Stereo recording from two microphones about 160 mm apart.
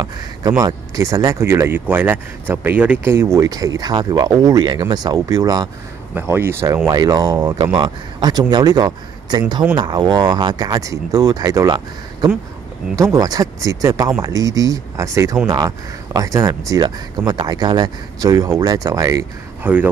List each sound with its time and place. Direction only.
0.0 s speech: 25° right (ahead or behind)
19.6 s speech: 10° right (ahead or behind)